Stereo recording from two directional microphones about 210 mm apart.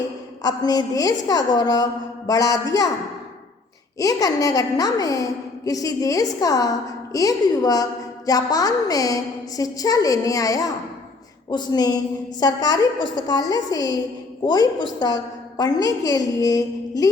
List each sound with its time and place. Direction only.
0.4 s a woman's voice: 20° left (ahead or behind)
3.9 s a woman's voice: 15° left (ahead or behind)